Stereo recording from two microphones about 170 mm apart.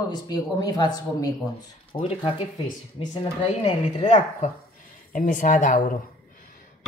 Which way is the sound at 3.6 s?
40° left (ahead or behind).